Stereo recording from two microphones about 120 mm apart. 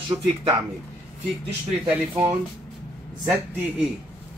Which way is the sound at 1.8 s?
15° right (ahead or behind).